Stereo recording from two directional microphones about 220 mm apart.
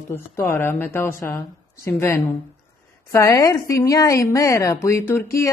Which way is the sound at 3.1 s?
15° left (ahead or behind).